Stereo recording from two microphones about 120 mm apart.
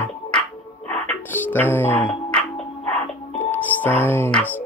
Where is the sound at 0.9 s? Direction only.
15° left (ahead or behind).